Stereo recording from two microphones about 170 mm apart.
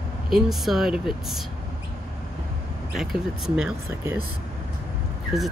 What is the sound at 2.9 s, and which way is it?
Speech, centre (ahead or behind).